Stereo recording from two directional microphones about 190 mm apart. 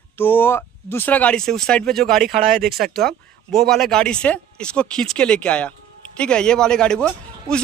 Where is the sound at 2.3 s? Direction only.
45° right (ahead or behind).